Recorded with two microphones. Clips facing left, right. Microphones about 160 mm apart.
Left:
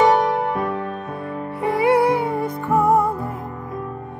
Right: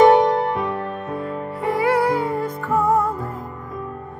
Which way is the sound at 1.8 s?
20° left (ahead or behind).